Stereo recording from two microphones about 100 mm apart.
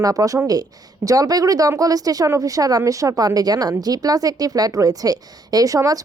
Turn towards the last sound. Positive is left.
turn(degrees=-35)  # may be behind; listen again after turning